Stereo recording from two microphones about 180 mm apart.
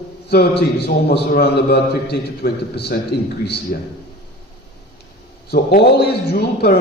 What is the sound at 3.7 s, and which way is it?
Speech, 50° left (ahead or behind).